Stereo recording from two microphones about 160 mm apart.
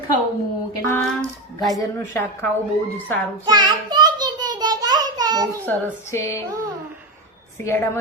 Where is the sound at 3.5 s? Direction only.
25° right (ahead or behind).